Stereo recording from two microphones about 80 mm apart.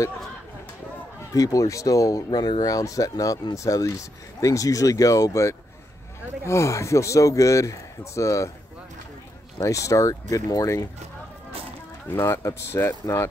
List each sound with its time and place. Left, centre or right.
1.3 s speech: left
9.6 s speech: left
12.1 s speech: left